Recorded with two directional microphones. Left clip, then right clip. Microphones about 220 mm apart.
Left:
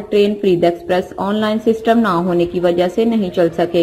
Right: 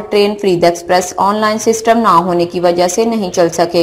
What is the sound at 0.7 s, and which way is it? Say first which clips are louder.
A woman's voice: right 5 dB; 5° right (ahead or behind).